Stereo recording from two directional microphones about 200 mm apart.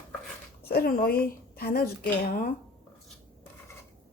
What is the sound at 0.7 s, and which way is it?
Speech, 50° left (ahead or behind).